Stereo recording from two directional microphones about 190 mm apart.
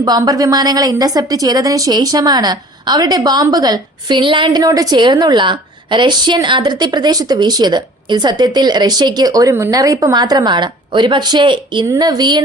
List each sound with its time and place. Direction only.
0.0 s a woman's voice: 20° right (ahead or behind)